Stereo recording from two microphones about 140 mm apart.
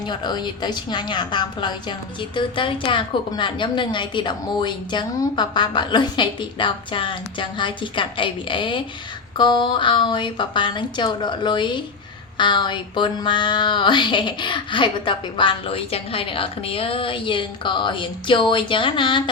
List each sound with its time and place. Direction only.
0.0 s a woman's voice: 30° left (ahead or behind)